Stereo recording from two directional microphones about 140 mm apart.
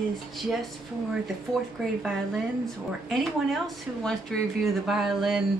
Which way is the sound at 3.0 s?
Centre (ahead or behind).